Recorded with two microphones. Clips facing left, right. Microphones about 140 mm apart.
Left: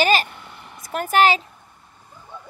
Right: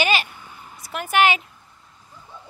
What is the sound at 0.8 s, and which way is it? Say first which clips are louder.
Speech: left 2 dB; 45° left (ahead or behind).